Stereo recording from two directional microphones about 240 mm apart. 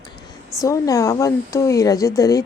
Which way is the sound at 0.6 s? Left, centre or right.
Centre.